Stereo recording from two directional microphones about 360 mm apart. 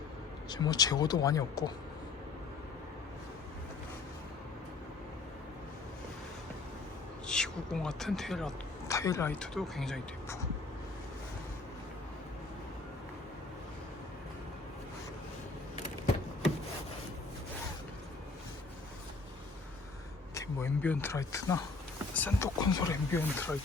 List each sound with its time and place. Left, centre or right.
0.5 s speech: centre
7.3 s speech: centre
20.3 s a sound: centre
22.1 s speech: centre